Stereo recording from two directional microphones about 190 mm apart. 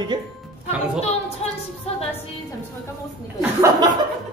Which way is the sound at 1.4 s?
30° left (ahead or behind).